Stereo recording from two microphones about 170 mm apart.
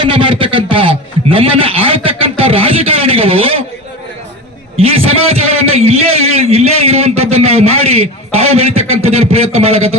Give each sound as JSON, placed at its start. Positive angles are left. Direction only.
{"t": 0.0, "sound": "a man's voice", "side_deg": -30}
{"t": 4.8, "sound": "a man's voice", "side_deg": -35}